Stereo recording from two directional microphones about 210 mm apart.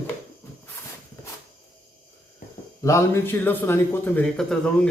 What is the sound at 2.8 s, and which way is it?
A man's voice, 15° left (ahead or behind).